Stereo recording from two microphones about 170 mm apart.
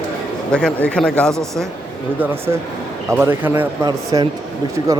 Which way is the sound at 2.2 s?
15° right (ahead or behind).